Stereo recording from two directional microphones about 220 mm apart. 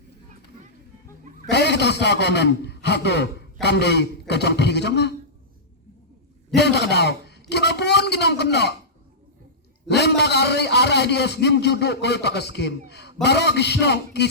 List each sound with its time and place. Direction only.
1.5 s a man's voice: 50° left (ahead or behind)
6.5 s a man's voice: 50° left (ahead or behind)
9.9 s a man's voice: 50° left (ahead or behind)